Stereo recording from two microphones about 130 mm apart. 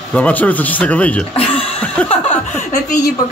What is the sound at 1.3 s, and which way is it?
Speech, 45° left (ahead or behind).